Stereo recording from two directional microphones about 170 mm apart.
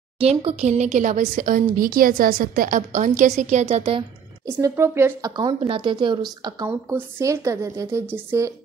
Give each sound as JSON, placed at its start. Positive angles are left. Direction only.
{"t": 0.2, "sound": "a woman's voice", "side_deg": -35}
{"t": 4.5, "sound": "a woman's voice", "side_deg": -20}
{"t": 5.3, "sound": "a woman's voice", "side_deg": -25}